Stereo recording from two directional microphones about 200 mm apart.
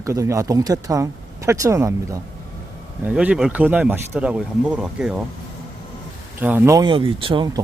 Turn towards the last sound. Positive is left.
turn(degrees=-20)  # may be behind; listen again after turning